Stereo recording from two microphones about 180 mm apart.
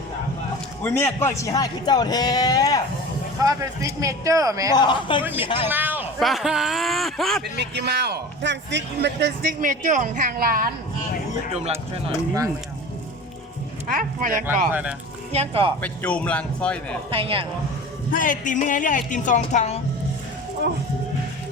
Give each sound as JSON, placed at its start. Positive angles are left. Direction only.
{"t": 0.8, "sound": "speech", "side_deg": 10}
{"t": 3.4, "sound": "speech", "side_deg": -20}
{"t": 4.7, "sound": "speech", "side_deg": 25}
{"t": 5.2, "sound": "speech", "side_deg": -10}
{"t": 5.6, "sound": "a sound", "side_deg": -10}
{"t": 6.1, "sound": "speech", "side_deg": 0}
{"t": 7.4, "sound": "a man's voice", "side_deg": -65}
{"t": 11.5, "sound": "speech", "side_deg": -35}
{"t": 13.8, "sound": "speech", "side_deg": -50}
{"t": 14.7, "sound": "speech", "side_deg": -10}
{"t": 15.3, "sound": "speech", "side_deg": -35}
{"t": 15.8, "sound": "speech", "side_deg": 5}
{"t": 17.1, "sound": "speech", "side_deg": -30}
{"t": 18.1, "sound": "speech", "side_deg": 50}